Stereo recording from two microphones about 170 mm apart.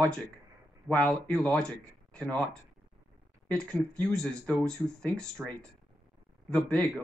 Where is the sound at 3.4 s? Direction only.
5° left (ahead or behind).